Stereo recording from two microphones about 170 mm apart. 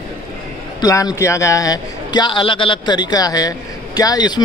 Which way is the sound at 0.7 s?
20° left (ahead or behind).